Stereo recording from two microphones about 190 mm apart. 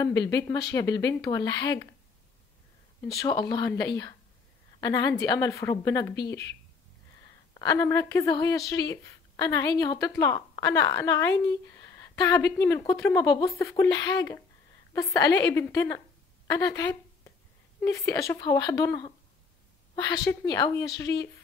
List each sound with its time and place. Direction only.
0.2 s a woman's voice: 15° left (ahead or behind)
3.0 s a woman's voice: 15° left (ahead or behind)
7.5 s a woman's voice: 20° left (ahead or behind)
20.0 s a woman's voice: 20° left (ahead or behind)